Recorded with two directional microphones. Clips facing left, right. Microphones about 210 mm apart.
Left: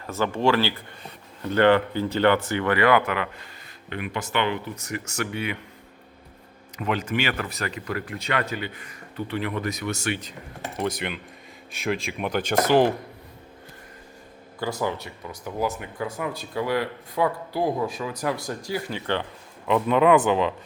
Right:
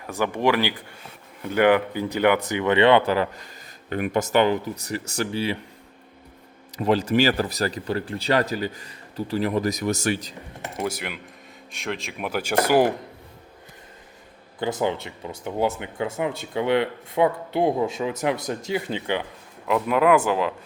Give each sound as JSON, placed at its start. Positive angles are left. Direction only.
{"t": 0.0, "sound": "speech", "side_deg": -15}
{"t": 3.8, "sound": "speech", "side_deg": -45}
{"t": 6.7, "sound": "speech", "side_deg": -35}
{"t": 10.6, "sound": "speech", "side_deg": -10}
{"t": 14.6, "sound": "speech", "side_deg": -20}
{"t": 19.6, "sound": "speech", "side_deg": -5}